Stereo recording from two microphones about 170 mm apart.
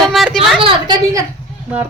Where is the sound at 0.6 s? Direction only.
30° right (ahead or behind).